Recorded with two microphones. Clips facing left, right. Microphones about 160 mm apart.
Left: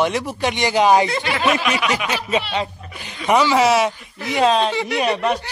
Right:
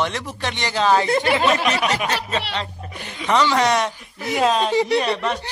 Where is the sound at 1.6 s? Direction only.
30° right (ahead or behind).